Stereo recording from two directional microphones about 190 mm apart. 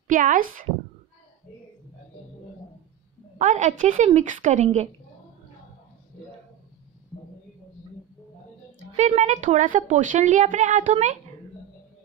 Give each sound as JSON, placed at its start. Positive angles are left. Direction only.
{"t": 0.1, "sound": "speech", "side_deg": -45}
{"t": 3.3, "sound": "a woman's voice", "side_deg": -40}
{"t": 8.9, "sound": "a woman's voice", "side_deg": -35}